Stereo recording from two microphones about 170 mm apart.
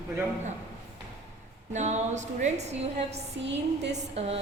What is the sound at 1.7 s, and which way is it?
A woman's voice, 40° right (ahead or behind).